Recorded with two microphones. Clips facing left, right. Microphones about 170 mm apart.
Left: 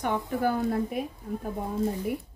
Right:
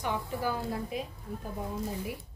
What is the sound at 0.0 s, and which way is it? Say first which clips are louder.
Speech: left 5 dB; 55° left (ahead or behind).